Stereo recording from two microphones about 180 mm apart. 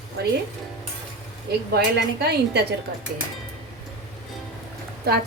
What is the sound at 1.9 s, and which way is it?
Speech, 65° right (ahead or behind).